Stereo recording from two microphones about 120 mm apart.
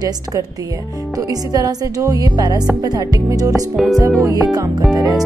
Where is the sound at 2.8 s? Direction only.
35° right (ahead or behind).